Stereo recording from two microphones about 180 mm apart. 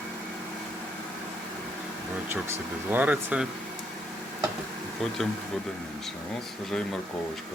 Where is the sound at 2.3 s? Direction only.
10° right (ahead or behind).